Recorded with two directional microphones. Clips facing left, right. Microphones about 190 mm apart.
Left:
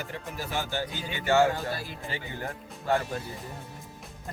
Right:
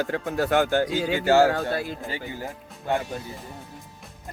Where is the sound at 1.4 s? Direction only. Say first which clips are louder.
Right 5 dB; 60° right (ahead or behind).